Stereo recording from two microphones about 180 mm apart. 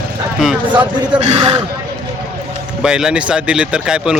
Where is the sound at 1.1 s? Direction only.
35° right (ahead or behind).